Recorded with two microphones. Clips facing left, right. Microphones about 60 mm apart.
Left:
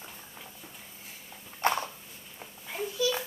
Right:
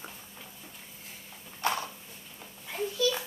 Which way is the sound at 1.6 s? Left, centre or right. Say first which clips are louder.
Left 3 dB; left.